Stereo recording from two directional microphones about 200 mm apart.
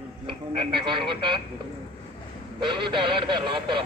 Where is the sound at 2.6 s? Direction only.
25° right (ahead or behind).